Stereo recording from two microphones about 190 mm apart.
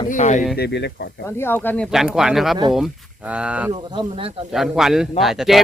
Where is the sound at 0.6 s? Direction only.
65° left (ahead or behind).